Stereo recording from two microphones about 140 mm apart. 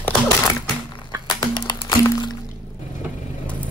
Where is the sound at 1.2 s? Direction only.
30° left (ahead or behind).